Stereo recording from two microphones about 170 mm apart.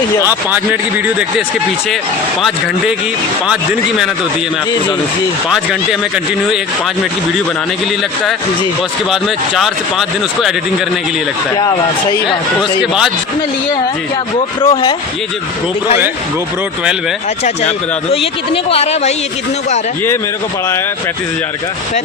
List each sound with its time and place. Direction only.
0.3 s a man's voice: 10° right (ahead or behind)
3.4 s speech: 5° right (ahead or behind)
9.6 s speech: centre (ahead or behind)
12.8 s speech: 5° right (ahead or behind)
14.3 s a man's voice: 35° left (ahead or behind)
18.1 s a man's voice: 35° left (ahead or behind)